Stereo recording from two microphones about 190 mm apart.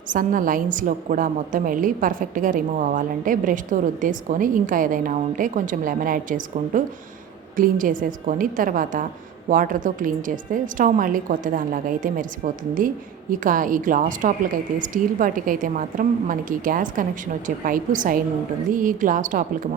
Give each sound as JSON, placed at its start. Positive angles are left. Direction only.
{"t": 0.1, "sound": "a woman's voice", "side_deg": -45}